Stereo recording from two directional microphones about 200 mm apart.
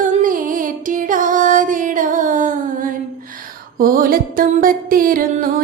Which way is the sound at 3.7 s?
45° right (ahead or behind).